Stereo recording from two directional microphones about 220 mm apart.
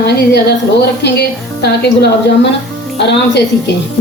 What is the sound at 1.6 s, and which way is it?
A woman's voice, 50° left (ahead or behind).